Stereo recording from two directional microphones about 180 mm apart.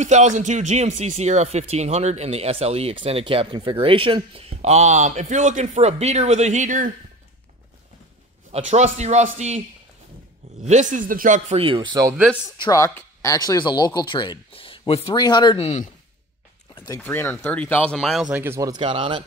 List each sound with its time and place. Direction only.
0.0 s speech: 40° right (ahead or behind)
8.5 s speech: 35° right (ahead or behind)
10.6 s speech: 40° right (ahead or behind); by 12.2 s 20° right (ahead or behind)
12.5 s speech: 20° left (ahead or behind)
16.7 s a sound: 25° left (ahead or behind)
17.0 s speech: 10° left (ahead or behind); by 19.2 s 30° right (ahead or behind)